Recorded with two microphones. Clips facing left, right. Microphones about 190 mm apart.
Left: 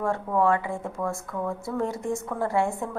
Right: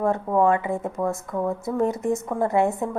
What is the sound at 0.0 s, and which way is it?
A woman's voice, 20° right (ahead or behind).